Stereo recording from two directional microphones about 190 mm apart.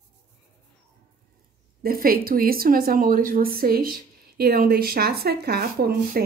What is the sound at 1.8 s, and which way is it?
Speech, 50° right (ahead or behind).